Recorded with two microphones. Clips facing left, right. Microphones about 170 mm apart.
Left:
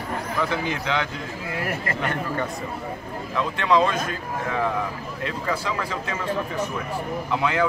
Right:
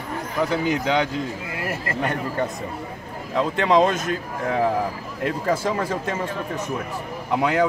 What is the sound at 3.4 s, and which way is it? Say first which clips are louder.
Speech: right 3 dB; 45° right (ahead or behind).